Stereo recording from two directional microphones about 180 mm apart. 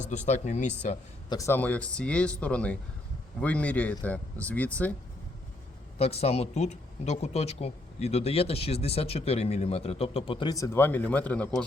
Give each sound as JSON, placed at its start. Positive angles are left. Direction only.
{"t": 0.0, "sound": "speech", "side_deg": 40}
{"t": 1.3, "sound": "speech", "side_deg": 15}
{"t": 6.0, "sound": "speech", "side_deg": 35}